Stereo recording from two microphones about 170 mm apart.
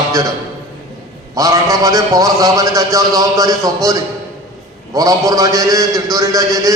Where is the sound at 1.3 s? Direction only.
20° right (ahead or behind).